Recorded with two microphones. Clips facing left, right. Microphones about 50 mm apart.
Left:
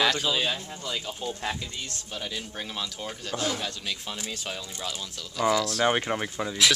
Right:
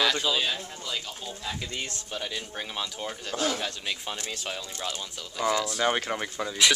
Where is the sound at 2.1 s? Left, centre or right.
Centre.